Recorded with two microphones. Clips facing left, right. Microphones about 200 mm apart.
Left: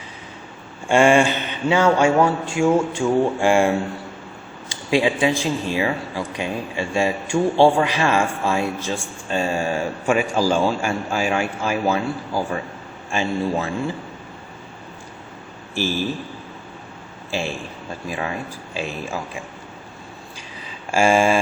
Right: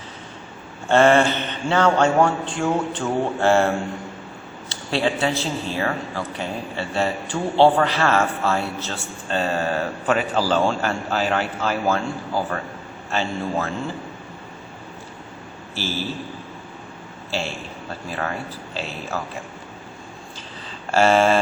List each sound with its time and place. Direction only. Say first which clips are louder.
0.9 s a man's voice: even; 10° left (ahead or behind)
4.7 s a man's voice: left 3 dB; 15° left (ahead or behind)
13.1 s a man's voice: left 3 dB; 15° left (ahead or behind)
15.7 s a man's voice: left 5 dB; 15° left (ahead or behind)
17.3 s a man's voice: left 2 dB; 15° left (ahead or behind)
20.9 s a man's voice: even; 10° left (ahead or behind)